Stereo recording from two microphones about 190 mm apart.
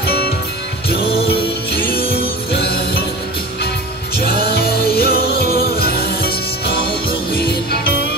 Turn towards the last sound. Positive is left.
turn(degrees=55)  # may be behind; listen again after turning